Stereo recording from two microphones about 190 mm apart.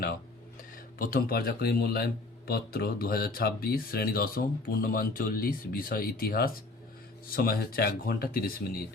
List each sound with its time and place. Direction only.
0.9 s speech: 50° left (ahead or behind)